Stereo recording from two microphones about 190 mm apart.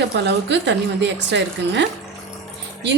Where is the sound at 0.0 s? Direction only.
65° right (ahead or behind).